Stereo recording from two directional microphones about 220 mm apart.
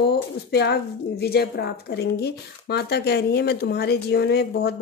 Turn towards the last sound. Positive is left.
turn(degrees=45)  # may be behind; listen again after turning